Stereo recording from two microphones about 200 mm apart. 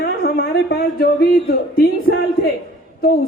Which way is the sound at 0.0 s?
50° left (ahead or behind).